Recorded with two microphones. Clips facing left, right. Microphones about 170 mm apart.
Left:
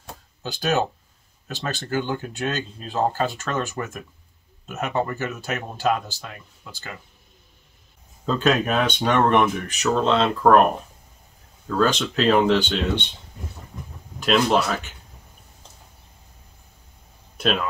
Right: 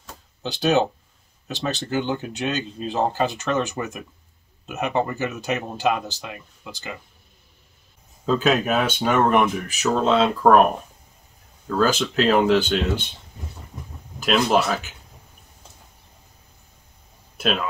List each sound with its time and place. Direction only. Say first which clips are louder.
0.4 s speech: right 3 dB; 20° right (ahead or behind)
8.3 s speech: right 1 dB; 5° right (ahead or behind)
11.6 s speech: right 1 dB; 5° right (ahead or behind)
14.2 s speech: even; centre (ahead or behind)
17.4 s speech: left 1 dB; centre (ahead or behind)